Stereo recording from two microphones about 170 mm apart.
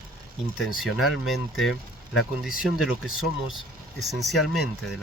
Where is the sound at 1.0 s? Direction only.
Centre (ahead or behind).